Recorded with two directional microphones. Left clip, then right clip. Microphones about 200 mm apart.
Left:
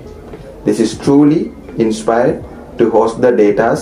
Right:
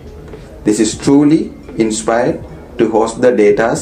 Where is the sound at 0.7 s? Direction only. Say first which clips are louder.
Even; 40° right (ahead or behind).